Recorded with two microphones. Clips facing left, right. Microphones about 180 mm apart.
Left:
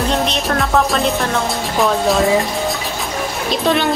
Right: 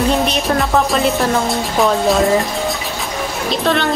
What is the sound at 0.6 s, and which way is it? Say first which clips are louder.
Music: left 1 dB; centre (ahead or behind).